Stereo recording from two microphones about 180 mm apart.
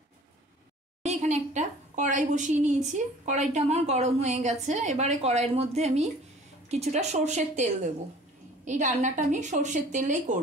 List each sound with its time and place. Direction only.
1.0 s a woman's voice: 40° right (ahead or behind)